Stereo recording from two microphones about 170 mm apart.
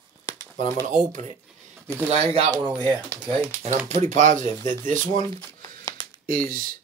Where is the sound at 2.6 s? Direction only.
25° right (ahead or behind).